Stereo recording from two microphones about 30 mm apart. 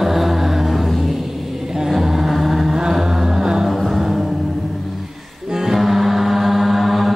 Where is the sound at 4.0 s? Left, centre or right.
Centre.